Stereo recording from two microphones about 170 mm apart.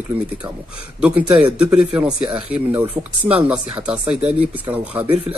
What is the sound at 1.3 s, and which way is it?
Speech, 5° right (ahead or behind).